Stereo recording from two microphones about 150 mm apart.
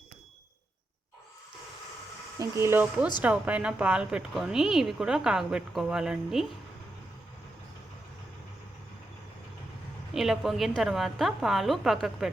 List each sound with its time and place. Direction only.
2.4 s speech: 20° right (ahead or behind)
10.2 s speech: centre (ahead or behind)